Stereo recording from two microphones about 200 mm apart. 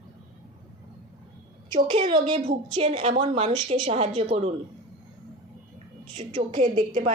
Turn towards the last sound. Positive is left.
turn(degrees=-35)  # may be behind; listen again after turning